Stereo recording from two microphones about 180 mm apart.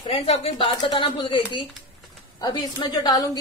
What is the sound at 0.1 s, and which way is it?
A woman's voice, 35° left (ahead or behind).